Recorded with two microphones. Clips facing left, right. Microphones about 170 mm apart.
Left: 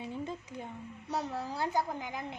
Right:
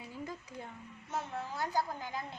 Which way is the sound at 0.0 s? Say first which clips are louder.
Left 5 dB; 25° left (ahead or behind).